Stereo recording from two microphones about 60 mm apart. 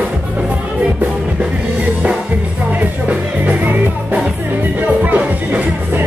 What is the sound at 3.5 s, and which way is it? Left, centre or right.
Music, right.